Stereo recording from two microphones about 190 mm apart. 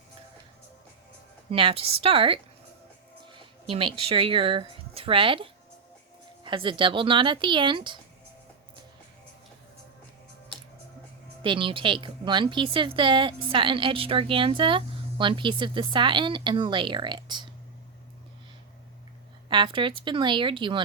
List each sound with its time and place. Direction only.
1.5 s a woman's voice: 30° right (ahead or behind)
11.4 s a woman's voice: 25° right (ahead or behind)
19.5 s a woman's voice: 25° right (ahead or behind)